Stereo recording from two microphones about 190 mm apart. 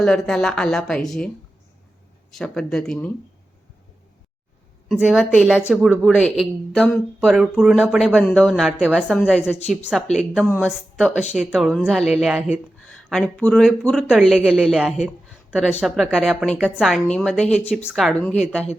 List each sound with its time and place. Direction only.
0.0 s speech: centre (ahead or behind)
2.3 s speech: 5° left (ahead or behind)
4.9 s speech: centre (ahead or behind)